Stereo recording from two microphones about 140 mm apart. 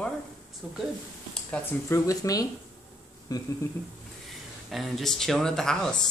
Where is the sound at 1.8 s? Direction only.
20° left (ahead or behind).